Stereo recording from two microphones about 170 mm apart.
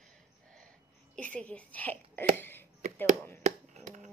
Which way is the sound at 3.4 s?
45° right (ahead or behind).